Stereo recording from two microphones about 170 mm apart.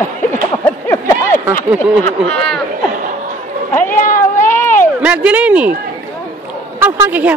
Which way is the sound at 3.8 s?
50° left (ahead or behind).